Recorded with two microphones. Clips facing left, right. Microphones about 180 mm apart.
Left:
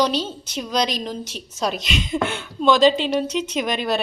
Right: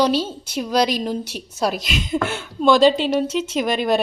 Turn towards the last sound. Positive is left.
turn(degrees=-5)  # may be behind; listen again after turning